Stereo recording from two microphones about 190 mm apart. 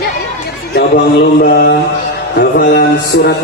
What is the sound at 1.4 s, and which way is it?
Speech, 55° left (ahead or behind).